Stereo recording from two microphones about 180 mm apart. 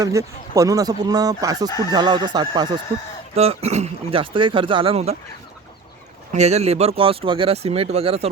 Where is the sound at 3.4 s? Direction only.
35° right (ahead or behind).